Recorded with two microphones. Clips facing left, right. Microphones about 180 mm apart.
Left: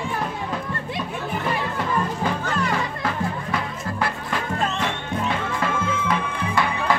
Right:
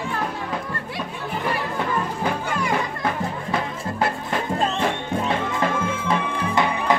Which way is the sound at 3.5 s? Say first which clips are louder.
Right 2 dB; 25° right (ahead or behind).